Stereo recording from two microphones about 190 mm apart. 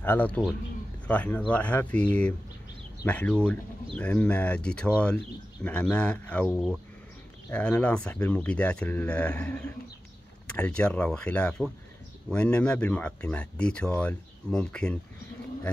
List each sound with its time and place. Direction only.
0.0 s speech: 10° left (ahead or behind)